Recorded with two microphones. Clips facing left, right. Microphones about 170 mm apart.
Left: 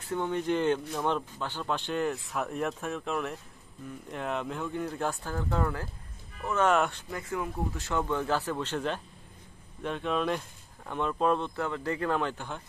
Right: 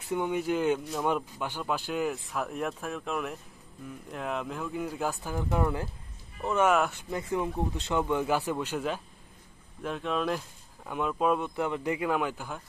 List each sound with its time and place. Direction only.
0.1 s speech: 10° right (ahead or behind)
6.7 s speech: centre (ahead or behind)
7.1 s speech: 20° right (ahead or behind); by 12.6 s 5° right (ahead or behind)